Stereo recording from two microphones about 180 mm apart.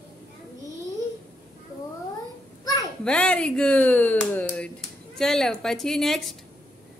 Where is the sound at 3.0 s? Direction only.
5° left (ahead or behind).